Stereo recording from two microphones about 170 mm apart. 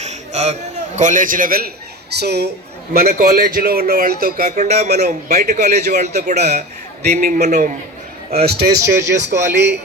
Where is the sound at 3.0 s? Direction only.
50° right (ahead or behind); by 4.5 s 65° right (ahead or behind).